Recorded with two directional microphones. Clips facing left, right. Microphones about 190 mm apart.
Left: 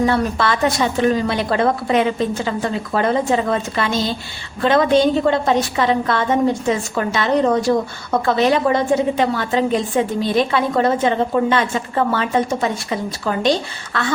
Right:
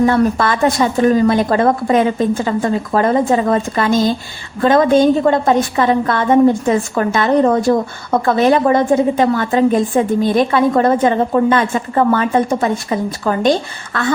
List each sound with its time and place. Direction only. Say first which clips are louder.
0.0 s a woman's voice: right 4 dB; 45° right (ahead or behind)